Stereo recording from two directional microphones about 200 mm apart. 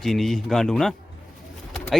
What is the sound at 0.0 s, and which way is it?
A man's voice, centre (ahead or behind).